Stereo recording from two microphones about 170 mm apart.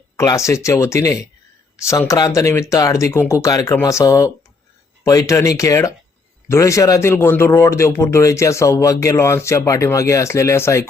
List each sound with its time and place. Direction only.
0.2 s speech: 15° left (ahead or behind)